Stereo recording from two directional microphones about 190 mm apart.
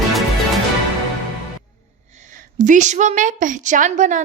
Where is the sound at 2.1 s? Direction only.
45° right (ahead or behind).